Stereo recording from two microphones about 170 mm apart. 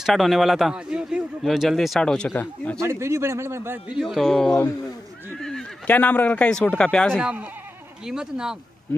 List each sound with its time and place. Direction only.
0.0 s a man's voice: centre (ahead or behind)
2.8 s speech: 15° right (ahead or behind)
4.1 s a man's voice: 5° left (ahead or behind)